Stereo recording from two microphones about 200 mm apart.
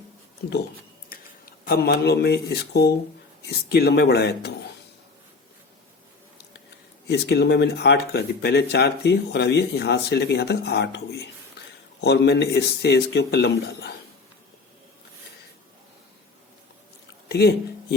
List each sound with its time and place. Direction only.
1.1 s speech: 45° left (ahead or behind)
7.1 s speech: 55° left (ahead or behind)
17.2 s a sound: 55° left (ahead or behind)